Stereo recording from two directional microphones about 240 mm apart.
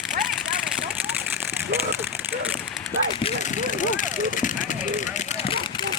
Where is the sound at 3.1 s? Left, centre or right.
Left.